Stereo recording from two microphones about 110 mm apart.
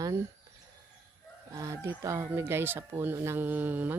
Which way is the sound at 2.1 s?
25° right (ahead or behind).